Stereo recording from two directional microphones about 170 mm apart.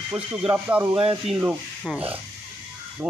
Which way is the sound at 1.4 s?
10° right (ahead or behind).